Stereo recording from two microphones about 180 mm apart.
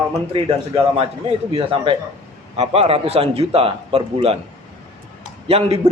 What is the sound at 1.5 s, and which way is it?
A man's voice, 30° right (ahead or behind).